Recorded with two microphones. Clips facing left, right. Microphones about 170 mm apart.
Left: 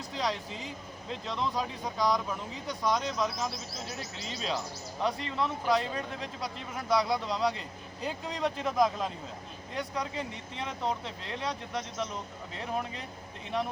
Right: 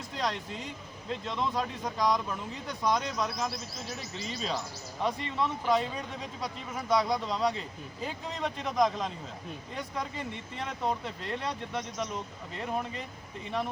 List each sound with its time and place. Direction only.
0.1 s speech: centre (ahead or behind)